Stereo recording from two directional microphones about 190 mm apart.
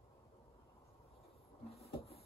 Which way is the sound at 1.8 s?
30° left (ahead or behind).